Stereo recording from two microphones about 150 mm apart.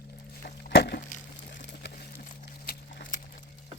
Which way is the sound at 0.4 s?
85° left.